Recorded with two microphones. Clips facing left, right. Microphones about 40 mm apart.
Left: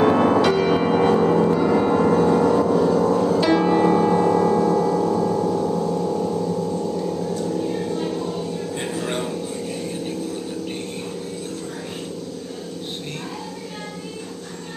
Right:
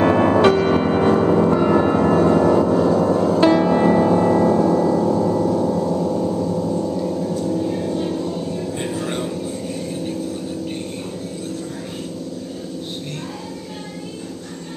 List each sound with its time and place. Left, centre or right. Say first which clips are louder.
0.0 s music: right 2 dB; centre
0.8 s music: right 1 dB; centre
1.8 s music: right 2 dB; centre
5.4 s gong: right 2 dB; centre
8.8 s a sound: even; centre